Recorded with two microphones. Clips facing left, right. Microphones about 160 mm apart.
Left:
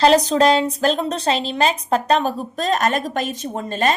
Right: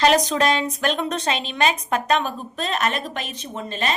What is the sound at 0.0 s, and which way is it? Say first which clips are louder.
A woman's voice: left 4 dB; 30° left (ahead or behind).